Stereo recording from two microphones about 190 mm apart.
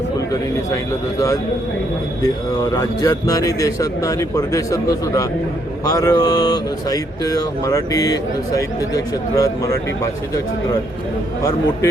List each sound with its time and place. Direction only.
2.2 s speech: 20° left (ahead or behind)